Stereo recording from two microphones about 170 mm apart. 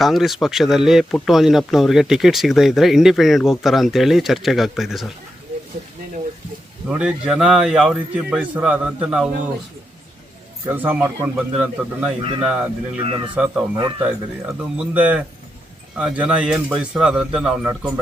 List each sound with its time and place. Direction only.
0.0 s speech: centre (ahead or behind)
6.8 s speech: 5° right (ahead or behind)
10.7 s speech: 10° right (ahead or behind)
13.0 s speech: 30° right (ahead or behind)
13.3 s speech: 5° right (ahead or behind)